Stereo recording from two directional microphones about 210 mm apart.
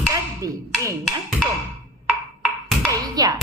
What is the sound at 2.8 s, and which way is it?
Speech, 20° right (ahead or behind).